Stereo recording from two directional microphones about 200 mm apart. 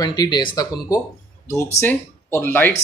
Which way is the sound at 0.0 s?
20° left (ahead or behind).